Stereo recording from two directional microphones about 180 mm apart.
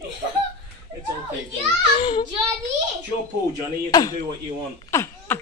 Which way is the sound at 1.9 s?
25° left (ahead or behind).